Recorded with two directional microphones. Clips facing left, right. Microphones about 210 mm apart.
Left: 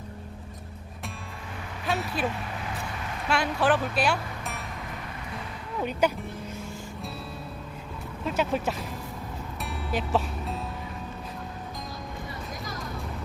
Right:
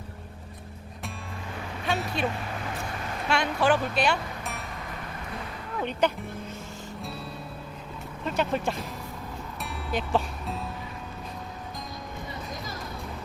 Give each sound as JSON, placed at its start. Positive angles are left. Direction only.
{"t": 1.9, "sound": "speech", "side_deg": 0}
{"t": 3.2, "sound": "speech", "side_deg": 5}
{"t": 5.8, "sound": "speech", "side_deg": 5}
{"t": 8.2, "sound": "speech", "side_deg": 5}
{"t": 9.6, "sound": "music", "side_deg": 0}